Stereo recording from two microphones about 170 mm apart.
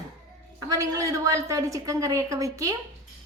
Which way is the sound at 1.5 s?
20° right (ahead or behind).